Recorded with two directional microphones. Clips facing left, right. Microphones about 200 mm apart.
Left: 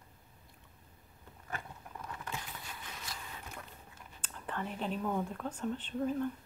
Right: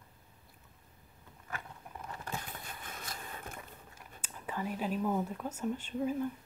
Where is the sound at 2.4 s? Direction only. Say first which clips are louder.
Right 1 dB; 50° right (ahead or behind).